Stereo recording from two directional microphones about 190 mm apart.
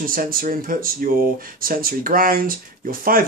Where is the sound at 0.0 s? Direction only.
50° right (ahead or behind).